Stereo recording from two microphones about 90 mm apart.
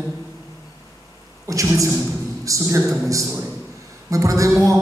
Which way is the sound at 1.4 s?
35° right (ahead or behind).